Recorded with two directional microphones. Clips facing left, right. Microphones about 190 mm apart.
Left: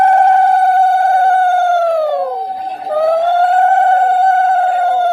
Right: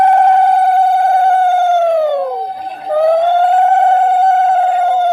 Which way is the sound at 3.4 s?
Centre (ahead or behind).